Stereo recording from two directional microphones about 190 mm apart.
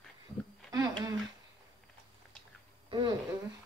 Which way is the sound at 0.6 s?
20° right (ahead or behind).